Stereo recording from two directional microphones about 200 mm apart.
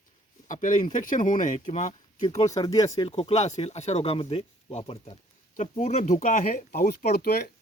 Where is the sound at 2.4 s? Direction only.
15° left (ahead or behind).